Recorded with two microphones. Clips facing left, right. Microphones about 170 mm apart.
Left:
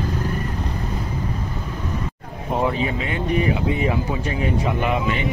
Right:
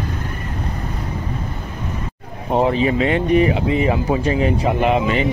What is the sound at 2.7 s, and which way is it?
Speech, 75° right (ahead or behind).